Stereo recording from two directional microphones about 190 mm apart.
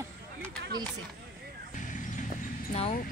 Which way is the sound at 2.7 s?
35° left (ahead or behind).